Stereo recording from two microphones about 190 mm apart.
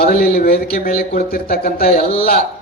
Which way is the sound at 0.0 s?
50° left (ahead or behind).